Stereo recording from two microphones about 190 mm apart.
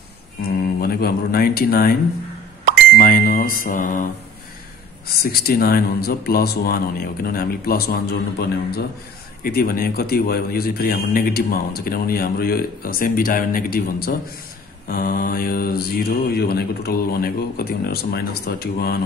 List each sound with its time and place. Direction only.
0.7 s speech: 55° left (ahead or behind)
3.0 s mantra: 50° left (ahead or behind)
5.0 s a man's voice: 55° left (ahead or behind)